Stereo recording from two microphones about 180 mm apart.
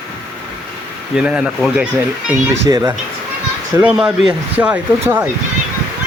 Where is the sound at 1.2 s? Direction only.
5° right (ahead or behind).